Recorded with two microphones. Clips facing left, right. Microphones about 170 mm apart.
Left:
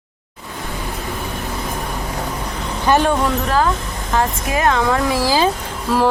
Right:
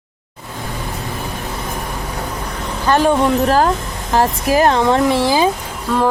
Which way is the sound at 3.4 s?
40° right (ahead or behind).